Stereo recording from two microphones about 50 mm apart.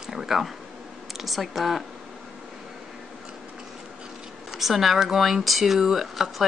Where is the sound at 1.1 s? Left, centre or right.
Centre.